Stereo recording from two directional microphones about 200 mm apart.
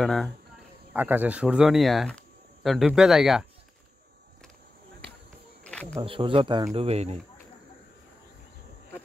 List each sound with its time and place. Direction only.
0.0 s speech: centre (ahead or behind)
0.9 s speech: 10° right (ahead or behind)
5.6 s cricket: 5° left (ahead or behind)
6.0 s speech: 25° right (ahead or behind)